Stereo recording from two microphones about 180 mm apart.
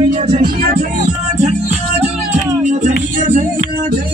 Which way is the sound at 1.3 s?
40° right (ahead or behind).